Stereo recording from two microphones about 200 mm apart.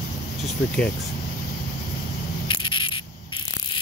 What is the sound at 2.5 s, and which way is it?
Insect, 25° left (ahead or behind).